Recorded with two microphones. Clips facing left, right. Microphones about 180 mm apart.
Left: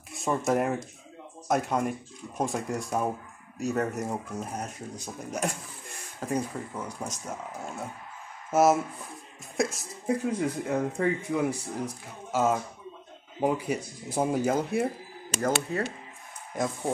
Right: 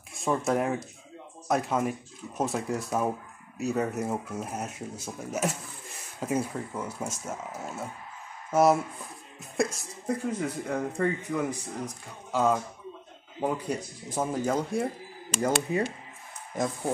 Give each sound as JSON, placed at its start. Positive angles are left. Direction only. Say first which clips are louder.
{"t": 0.1, "sound": "speech", "louder": "even", "side_deg": 0}
{"t": 15.4, "sound": "speech", "louder": "right 1 dB", "side_deg": -10}